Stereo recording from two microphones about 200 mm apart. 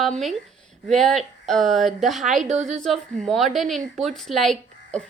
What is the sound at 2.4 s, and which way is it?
Speech, 35° right (ahead or behind).